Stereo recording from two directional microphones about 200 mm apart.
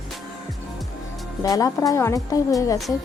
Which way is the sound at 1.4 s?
15° left (ahead or behind).